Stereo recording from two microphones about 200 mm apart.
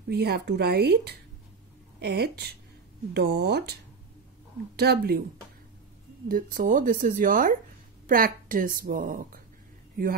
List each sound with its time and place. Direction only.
0.1 s speech: 55° right (ahead or behind)
4.7 s speech: 50° right (ahead or behind)
6.2 s speech: 45° right (ahead or behind)